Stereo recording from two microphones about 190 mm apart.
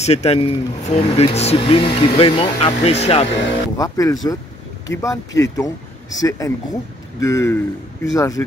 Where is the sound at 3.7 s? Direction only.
20° left (ahead or behind).